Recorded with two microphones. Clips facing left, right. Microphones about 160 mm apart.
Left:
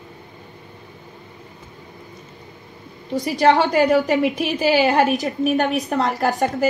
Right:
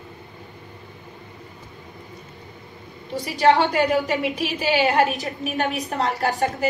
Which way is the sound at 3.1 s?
40° left (ahead or behind).